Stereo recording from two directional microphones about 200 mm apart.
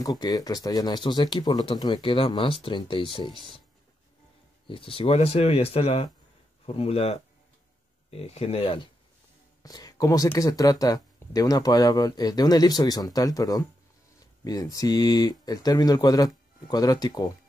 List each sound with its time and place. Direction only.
0.0 s speech: 20° left (ahead or behind)
4.6 s speech: 25° left (ahead or behind)